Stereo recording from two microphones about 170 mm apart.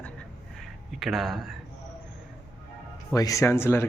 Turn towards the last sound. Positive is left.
turn(degrees=15)  # may be behind; listen again after turning